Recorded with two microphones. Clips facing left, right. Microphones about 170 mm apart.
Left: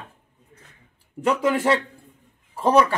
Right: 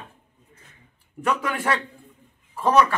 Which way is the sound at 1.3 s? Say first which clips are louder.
Left 5 dB; 25° left (ahead or behind).